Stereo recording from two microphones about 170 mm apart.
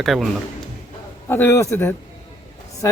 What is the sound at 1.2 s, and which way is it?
Speech, 15° left (ahead or behind).